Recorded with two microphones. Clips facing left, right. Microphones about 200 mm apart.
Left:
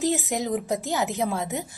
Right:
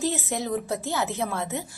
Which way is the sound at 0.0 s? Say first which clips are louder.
Left 3 dB; 15° left (ahead or behind).